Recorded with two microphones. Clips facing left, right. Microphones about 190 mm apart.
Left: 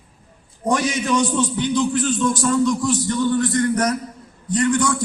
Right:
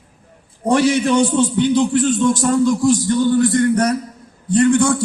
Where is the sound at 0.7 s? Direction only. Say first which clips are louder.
Right 6 dB; 30° right (ahead or behind).